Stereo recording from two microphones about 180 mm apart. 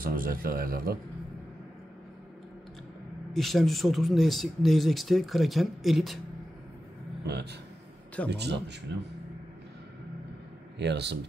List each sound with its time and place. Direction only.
0.0 s a man's voice: 50° right (ahead or behind)
3.3 s speech: centre (ahead or behind)
7.3 s a man's voice: 65° right (ahead or behind)
10.8 s speech: 70° right (ahead or behind)